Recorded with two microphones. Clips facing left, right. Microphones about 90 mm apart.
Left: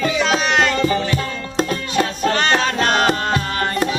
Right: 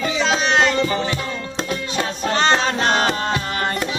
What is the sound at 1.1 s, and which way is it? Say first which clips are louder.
Music: left 4 dB; 45° left (ahead or behind).